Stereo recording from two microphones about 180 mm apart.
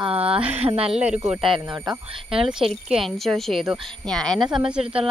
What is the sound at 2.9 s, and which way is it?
Speech, centre (ahead or behind).